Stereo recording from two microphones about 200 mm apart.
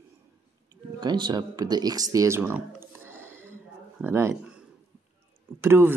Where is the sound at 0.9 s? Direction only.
20° right (ahead or behind).